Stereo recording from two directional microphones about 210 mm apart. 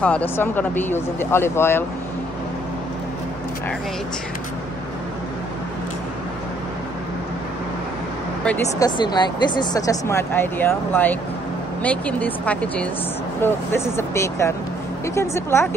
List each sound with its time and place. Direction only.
0.0 s speech: 10° left (ahead or behind)
8.7 s speech: 20° left (ahead or behind)